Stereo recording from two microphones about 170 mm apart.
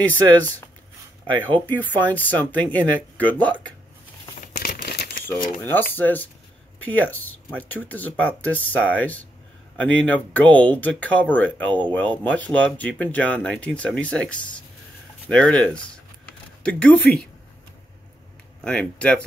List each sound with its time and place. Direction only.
0.0 s speech: 10° left (ahead or behind)
4.6 s crumpling: 65° left (ahead or behind)
5.2 s speech: 10° left (ahead or behind)
18.6 s speech: 5° left (ahead or behind)